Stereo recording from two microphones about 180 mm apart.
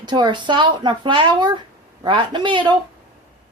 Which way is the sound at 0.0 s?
25° right (ahead or behind).